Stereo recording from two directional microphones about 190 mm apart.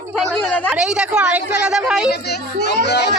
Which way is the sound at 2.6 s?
60° left (ahead or behind).